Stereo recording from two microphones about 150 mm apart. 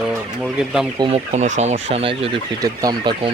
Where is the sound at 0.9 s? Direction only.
35° right (ahead or behind).